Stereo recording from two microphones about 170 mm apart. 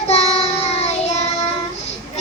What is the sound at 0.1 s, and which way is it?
Child singing, 40° left (ahead or behind).